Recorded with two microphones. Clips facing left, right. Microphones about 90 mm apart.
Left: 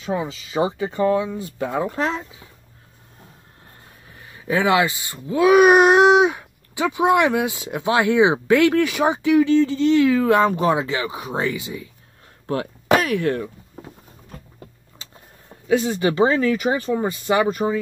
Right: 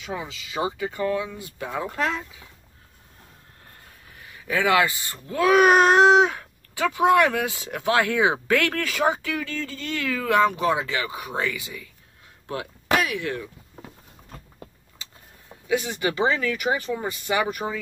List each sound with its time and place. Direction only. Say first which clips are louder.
0.0 s speech: left 7 dB; 30° left (ahead or behind)
4.2 s speech: left 4 dB; 25° left (ahead or behind)
12.4 s speech: left 6 dB; 40° left (ahead or behind)
15.7 s speech: left 6 dB; 30° left (ahead or behind)